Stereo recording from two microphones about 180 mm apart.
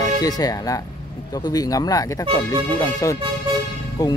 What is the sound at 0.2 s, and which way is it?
Speech, 20° left (ahead or behind).